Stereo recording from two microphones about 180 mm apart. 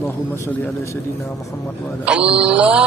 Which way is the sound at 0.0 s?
15° left (ahead or behind).